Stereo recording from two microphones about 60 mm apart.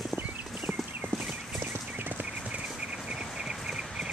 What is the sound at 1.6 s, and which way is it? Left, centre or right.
Clip-clop, right.